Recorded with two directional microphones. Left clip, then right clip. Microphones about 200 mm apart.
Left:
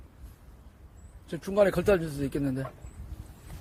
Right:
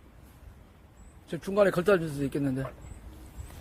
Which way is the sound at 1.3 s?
10° left (ahead or behind).